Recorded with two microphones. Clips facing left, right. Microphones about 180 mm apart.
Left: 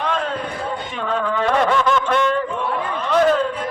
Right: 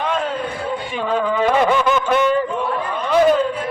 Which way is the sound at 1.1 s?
5° right (ahead or behind).